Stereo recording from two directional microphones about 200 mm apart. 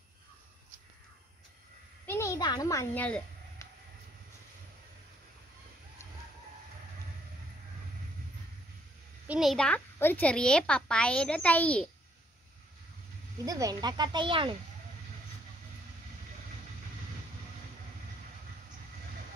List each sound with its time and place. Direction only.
2.0 s a sound: 15° left (ahead or behind)
9.3 s a woman's voice: centre (ahead or behind)
13.5 s speech: 15° right (ahead or behind)